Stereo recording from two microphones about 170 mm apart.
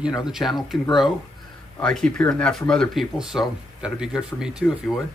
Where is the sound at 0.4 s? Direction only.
10° left (ahead or behind).